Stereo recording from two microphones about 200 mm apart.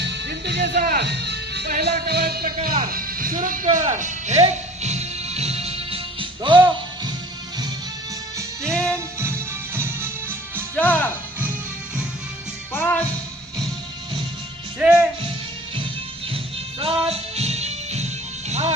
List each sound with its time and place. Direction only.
0.0 s speech: 60° right (ahead or behind); by 3.8 s 40° right (ahead or behind)
3.9 s music: 35° right (ahead or behind)
8.7 s music: 5° left (ahead or behind)
9.1 s music: 15° right (ahead or behind)
10.8 s music: 10° left (ahead or behind)
12.7 s music: 10° left (ahead or behind)
14.8 s speech: 5° right (ahead or behind)
17.1 s music: 30° right (ahead or behind)